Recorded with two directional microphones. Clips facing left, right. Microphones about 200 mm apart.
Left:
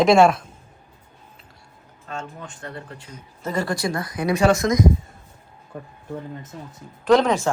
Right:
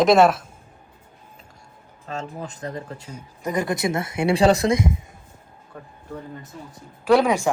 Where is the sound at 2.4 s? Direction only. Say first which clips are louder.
Right 4 dB; 35° right (ahead or behind).